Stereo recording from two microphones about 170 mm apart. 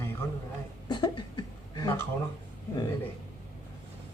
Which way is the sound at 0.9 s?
25° left (ahead or behind).